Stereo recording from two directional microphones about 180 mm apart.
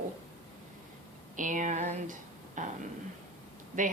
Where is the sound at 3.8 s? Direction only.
45° right (ahead or behind).